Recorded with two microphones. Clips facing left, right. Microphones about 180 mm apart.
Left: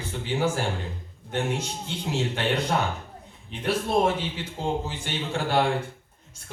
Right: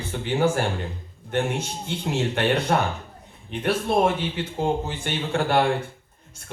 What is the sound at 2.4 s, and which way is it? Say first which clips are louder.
A man's voice: right 5 dB; 60° right (ahead or behind).